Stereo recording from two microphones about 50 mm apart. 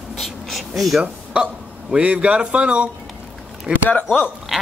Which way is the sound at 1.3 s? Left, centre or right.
Centre.